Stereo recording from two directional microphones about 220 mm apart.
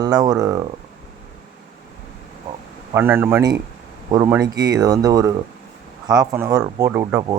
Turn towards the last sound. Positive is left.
turn(degrees=-15)  # may be behind; listen again after turning